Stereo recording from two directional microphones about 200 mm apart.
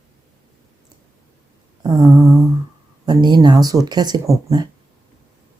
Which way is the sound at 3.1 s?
20° right (ahead or behind).